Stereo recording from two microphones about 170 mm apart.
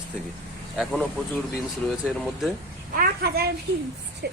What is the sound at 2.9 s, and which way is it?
A woman's voice, 65° right (ahead or behind).